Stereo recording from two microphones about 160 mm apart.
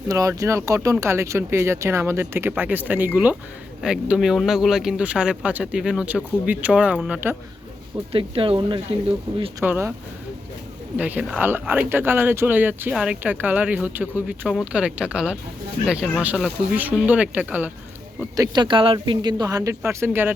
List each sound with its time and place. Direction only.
0.1 s speech: 20° right (ahead or behind)
8.1 s speech: 35° right (ahead or behind)
9.6 s speech: 15° right (ahead or behind)
10.9 s speech: 10° right (ahead or behind)
18.3 s speech: 30° right (ahead or behind)